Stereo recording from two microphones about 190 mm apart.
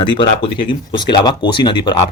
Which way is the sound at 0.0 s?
25° left (ahead or behind).